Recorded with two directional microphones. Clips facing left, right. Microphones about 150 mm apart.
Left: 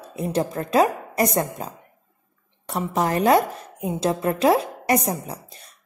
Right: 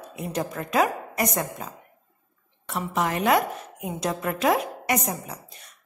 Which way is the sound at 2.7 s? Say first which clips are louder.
Left 3 dB; 35° left (ahead or behind).